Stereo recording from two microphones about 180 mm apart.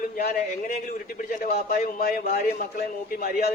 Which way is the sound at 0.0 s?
45° left (ahead or behind).